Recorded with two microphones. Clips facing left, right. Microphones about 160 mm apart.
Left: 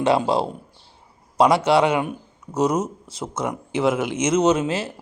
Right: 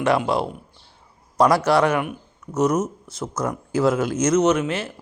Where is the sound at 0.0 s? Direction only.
30° left (ahead or behind).